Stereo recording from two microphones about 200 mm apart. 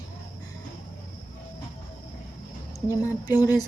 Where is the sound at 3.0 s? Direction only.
15° left (ahead or behind).